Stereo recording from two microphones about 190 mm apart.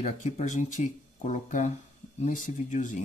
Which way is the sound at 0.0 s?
35° left (ahead or behind).